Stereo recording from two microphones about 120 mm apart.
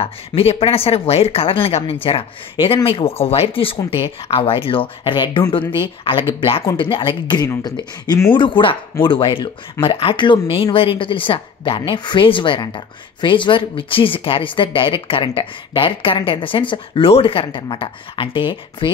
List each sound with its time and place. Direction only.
0.0 s speech: 55° left (ahead or behind)